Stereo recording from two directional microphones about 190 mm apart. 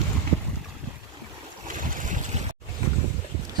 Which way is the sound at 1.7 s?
45° right (ahead or behind).